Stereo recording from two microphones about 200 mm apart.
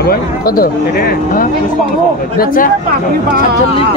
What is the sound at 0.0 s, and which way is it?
Speech, 45° left (ahead or behind).